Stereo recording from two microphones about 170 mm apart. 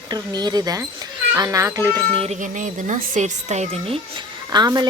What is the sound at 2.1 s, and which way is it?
A woman's voice, 40° right (ahead or behind).